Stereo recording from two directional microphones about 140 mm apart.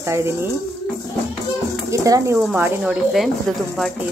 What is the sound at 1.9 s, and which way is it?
Speech, 25° right (ahead or behind).